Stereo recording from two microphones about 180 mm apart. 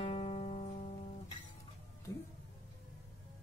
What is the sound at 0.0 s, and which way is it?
Music, 35° left (ahead or behind).